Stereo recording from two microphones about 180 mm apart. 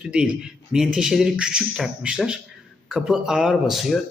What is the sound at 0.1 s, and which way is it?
Speech, 5° right (ahead or behind).